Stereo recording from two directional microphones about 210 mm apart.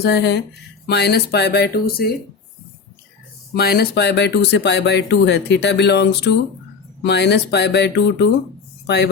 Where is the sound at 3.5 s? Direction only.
50° left (ahead or behind).